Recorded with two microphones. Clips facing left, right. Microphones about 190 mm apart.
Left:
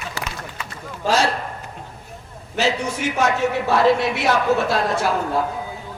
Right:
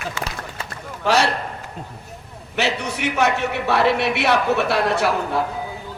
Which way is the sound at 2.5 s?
65° right (ahead or behind).